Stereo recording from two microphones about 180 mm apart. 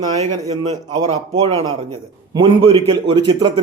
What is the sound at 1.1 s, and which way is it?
A man's voice, 35° right (ahead or behind).